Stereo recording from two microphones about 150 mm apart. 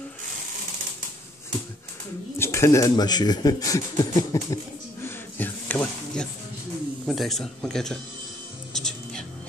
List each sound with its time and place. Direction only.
2.3 s a man's voice: 15° left (ahead or behind)
5.0 s a sound: 10° left (ahead or behind)
7.1 s speech: centre (ahead or behind)
8.7 s music: 5° left (ahead or behind)